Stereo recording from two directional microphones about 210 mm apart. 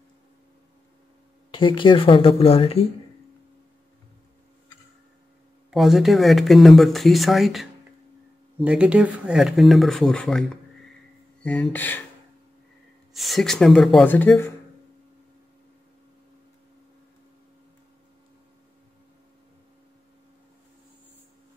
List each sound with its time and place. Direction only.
1.5 s speech: 25° left (ahead or behind)
5.7 s speech: centre (ahead or behind)
8.6 s speech: 5° right (ahead or behind)
11.7 s speech: 10° left (ahead or behind)
13.1 s speech: centre (ahead or behind)